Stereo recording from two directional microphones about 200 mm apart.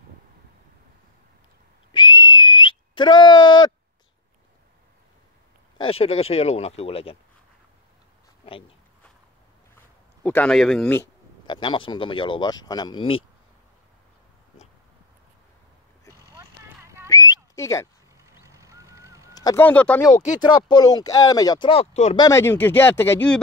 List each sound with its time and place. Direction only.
1.9 s whistling: 25° left (ahead or behind)
5.8 s speech: 30° left (ahead or behind)
8.5 s speech: 25° left (ahead or behind)
10.2 s a man's voice: 5° left (ahead or behind)
10.9 s a sound: 10° left (ahead or behind)
11.5 s speech: 25° left (ahead or behind)
16.6 s horse: 15° right (ahead or behind)
17.1 s whistling: 15° left (ahead or behind)
18.1 s a sound: 15° right (ahead or behind)
19.3 s speech: 15° left (ahead or behind)
20.3 s speech: 20° left (ahead or behind)
22.2 s speech: 15° left (ahead or behind)